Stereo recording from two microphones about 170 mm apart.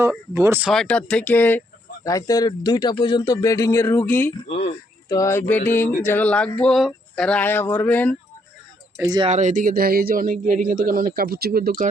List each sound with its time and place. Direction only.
0.0 s speech: 15° right (ahead or behind)
0.7 s speech: 5° left (ahead or behind)
4.5 s speech: 40° left (ahead or behind)
5.0 s speech: 20° left (ahead or behind)
9.0 s speech: 25° right (ahead or behind)
9.3 s speech: 45° right (ahead or behind)